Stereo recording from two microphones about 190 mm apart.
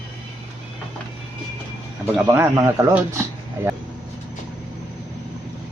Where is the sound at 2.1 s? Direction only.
10° right (ahead or behind).